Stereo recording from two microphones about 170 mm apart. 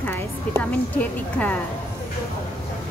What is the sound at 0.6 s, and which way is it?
Speech, 10° left (ahead or behind).